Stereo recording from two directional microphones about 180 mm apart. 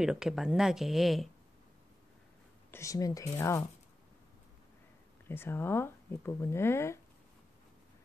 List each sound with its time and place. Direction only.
0.0 s speech: 5° right (ahead or behind)
2.7 s speech: 15° left (ahead or behind)
5.3 s speech: 10° left (ahead or behind)